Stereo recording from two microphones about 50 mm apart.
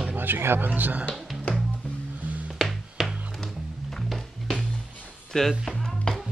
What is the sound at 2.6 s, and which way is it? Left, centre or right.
Music, centre.